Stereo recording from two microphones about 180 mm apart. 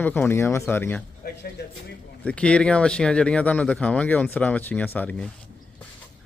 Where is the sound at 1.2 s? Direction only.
55° left (ahead or behind).